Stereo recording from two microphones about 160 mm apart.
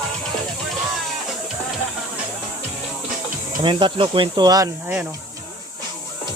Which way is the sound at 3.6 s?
30° right (ahead or behind).